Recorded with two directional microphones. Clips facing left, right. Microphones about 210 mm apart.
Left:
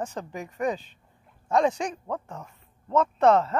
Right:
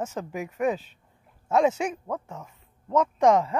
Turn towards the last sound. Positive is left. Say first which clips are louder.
# even
turn(degrees=-10)  # may be behind; listen again after turning